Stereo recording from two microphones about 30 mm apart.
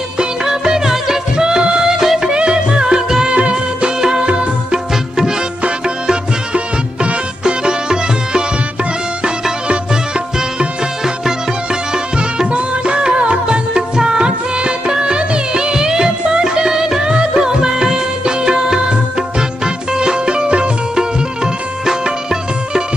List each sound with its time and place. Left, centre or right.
0.5 s music: centre
1.3 s music: right
2.2 s music: right
3.3 s music of bollywood: right
4.2 s music: right
6.5 s music: right
9.7 s music: right
11.9 s music: right
12.4 s music: right
13.7 s music: right
21.8 s music: right